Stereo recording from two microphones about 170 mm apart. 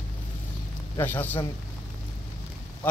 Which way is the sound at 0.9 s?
10° left (ahead or behind).